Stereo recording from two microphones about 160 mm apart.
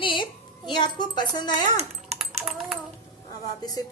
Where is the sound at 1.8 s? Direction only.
40° right (ahead or behind).